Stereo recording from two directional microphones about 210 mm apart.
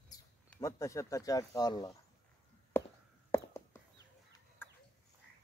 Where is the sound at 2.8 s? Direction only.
10° left (ahead or behind).